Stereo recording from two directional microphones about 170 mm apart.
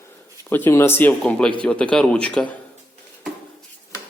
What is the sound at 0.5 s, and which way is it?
Speech, 15° left (ahead or behind).